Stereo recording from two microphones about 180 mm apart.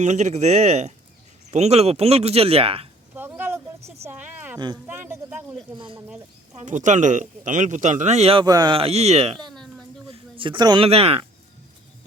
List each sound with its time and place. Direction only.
0.0 s speech: 40° right (ahead or behind)
3.2 s a sound: 10° right (ahead or behind)
4.5 s speech: 25° right (ahead or behind)
4.9 s a man's voice: 10° right (ahead or behind)
5.7 s speech: 25° right (ahead or behind)
6.0 s speech: 15° right (ahead or behind)
6.7 s a man's voice: 45° right (ahead or behind)
8.4 s speech: 25° right (ahead or behind)
9.4 s a sound: centre (ahead or behind)
10.1 s speech: 30° right (ahead or behind)